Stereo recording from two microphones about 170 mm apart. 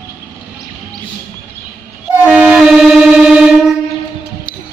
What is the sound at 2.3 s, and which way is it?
Music, 5° right (ahead or behind).